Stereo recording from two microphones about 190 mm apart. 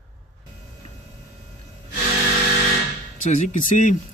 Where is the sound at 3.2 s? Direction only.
40° left (ahead or behind).